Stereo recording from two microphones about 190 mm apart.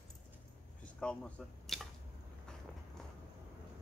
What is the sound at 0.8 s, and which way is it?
Drip, 5° left (ahead or behind).